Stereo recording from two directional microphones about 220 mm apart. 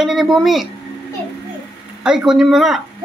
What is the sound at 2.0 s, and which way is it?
Speech, centre (ahead or behind).